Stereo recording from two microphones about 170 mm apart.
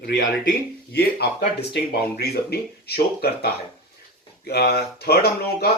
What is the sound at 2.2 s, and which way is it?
Speech, 70° left (ahead or behind).